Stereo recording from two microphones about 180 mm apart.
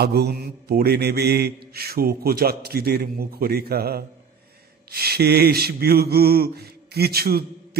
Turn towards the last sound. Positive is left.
turn(degrees=-60)  # may be behind; listen again after turning